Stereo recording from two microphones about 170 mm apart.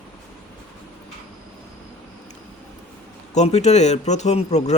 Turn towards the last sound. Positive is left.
turn(degrees=40)  # may be behind; listen again after turning